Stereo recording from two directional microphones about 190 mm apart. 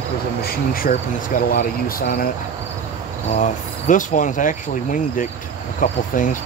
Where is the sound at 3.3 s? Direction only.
40° left (ahead or behind).